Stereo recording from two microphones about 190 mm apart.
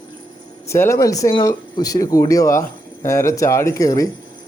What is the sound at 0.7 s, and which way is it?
Speech, 15° left (ahead or behind).